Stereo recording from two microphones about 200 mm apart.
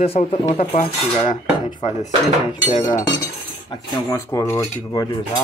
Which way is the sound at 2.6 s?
30° left (ahead or behind).